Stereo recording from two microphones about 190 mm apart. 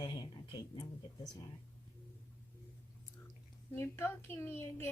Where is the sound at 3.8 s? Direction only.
10° left (ahead or behind).